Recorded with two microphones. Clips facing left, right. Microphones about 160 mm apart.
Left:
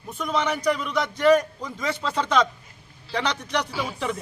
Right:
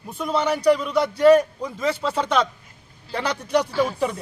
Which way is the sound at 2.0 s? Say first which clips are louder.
Left 2 dB; 10° right (ahead or behind).